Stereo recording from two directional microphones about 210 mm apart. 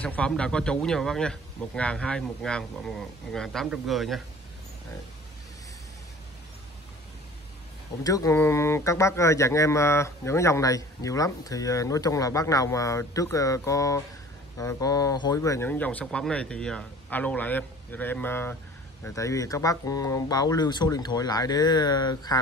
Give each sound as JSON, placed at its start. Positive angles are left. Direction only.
{"t": 0.0, "sound": "speech", "side_deg": 5}
{"t": 8.0, "sound": "a man's voice", "side_deg": 15}